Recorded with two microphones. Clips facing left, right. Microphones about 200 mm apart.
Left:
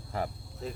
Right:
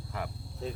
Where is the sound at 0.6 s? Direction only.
Centre (ahead or behind).